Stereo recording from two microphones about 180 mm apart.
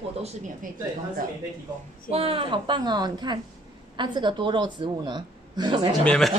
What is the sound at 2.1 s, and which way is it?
A woman's voice, 30° right (ahead or behind).